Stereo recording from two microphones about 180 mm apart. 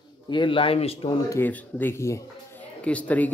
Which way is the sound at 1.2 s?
10° left (ahead or behind).